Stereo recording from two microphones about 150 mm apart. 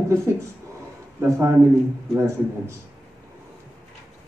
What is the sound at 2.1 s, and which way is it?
Speech, 15° right (ahead or behind).